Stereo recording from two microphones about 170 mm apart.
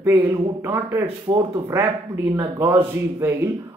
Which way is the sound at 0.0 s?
15° right (ahead or behind).